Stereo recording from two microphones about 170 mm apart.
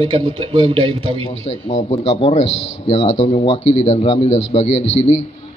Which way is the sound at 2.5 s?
90° left.